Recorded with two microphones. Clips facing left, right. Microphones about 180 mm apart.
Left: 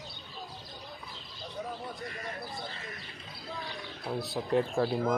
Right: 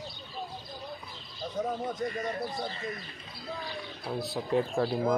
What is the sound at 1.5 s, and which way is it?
Bird, 45° right (ahead or behind).